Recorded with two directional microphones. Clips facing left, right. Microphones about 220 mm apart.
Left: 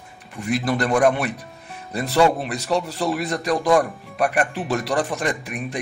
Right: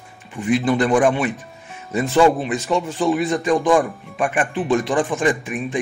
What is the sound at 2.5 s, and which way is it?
Speech, 40° left (ahead or behind).